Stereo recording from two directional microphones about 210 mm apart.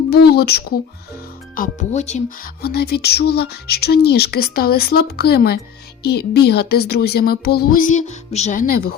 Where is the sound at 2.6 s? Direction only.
50° left (ahead or behind).